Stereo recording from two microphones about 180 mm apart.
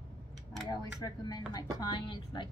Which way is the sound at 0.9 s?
20° left (ahead or behind).